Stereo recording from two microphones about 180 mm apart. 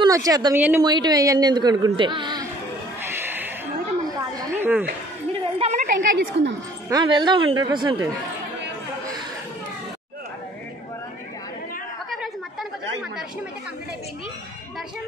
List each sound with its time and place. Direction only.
0.0 s speech: 20° right (ahead or behind)
0.8 s speech: 25° right (ahead or behind)
3.0 s a sound: 10° right (ahead or behind)
5.8 s a woman's voice: 70° right (ahead or behind)
6.9 s speech: 25° right (ahead or behind)
12.1 s chatter: centre (ahead or behind)